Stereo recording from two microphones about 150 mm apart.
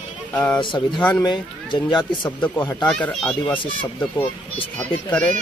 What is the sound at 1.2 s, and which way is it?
Speech, 30° left (ahead or behind).